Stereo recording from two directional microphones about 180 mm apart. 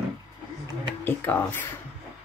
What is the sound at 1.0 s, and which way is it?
Speech, 10° left (ahead or behind).